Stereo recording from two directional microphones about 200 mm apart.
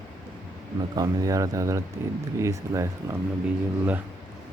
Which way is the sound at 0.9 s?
15° right (ahead or behind).